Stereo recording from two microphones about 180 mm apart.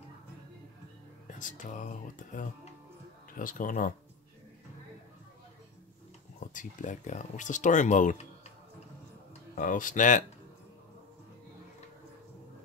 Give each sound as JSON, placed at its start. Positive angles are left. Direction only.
{"t": 1.2, "sound": "speech", "side_deg": 45}
{"t": 6.5, "sound": "speech", "side_deg": 45}
{"t": 9.6, "sound": "speech", "side_deg": 50}